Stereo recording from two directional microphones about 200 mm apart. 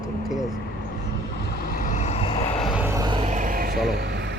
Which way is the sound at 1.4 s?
50° left (ahead or behind).